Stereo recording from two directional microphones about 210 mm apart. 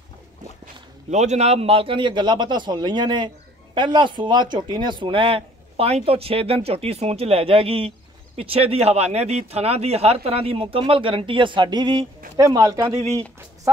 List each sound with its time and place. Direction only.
1.1 s a man's voice: 35° right (ahead or behind); by 12.9 s 15° right (ahead or behind)